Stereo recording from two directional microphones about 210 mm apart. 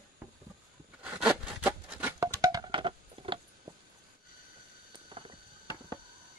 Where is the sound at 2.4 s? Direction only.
20° right (ahead or behind).